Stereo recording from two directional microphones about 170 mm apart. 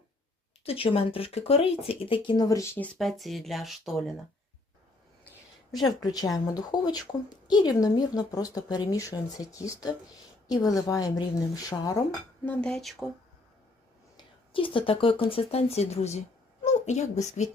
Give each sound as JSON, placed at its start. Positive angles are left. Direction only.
{"t": 0.6, "sound": "speech", "side_deg": 35}
{"t": 2.7, "sound": "speech", "side_deg": 5}
{"t": 6.0, "sound": "a woman's voice", "side_deg": 20}
{"t": 12.5, "sound": "speech", "side_deg": 5}
{"t": 14.2, "sound": "speech", "side_deg": 30}